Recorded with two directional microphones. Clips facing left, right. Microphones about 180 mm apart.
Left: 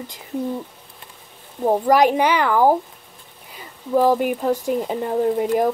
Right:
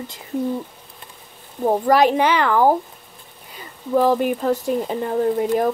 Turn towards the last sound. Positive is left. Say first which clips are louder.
# even
turn(degrees=15)  # may be behind; listen again after turning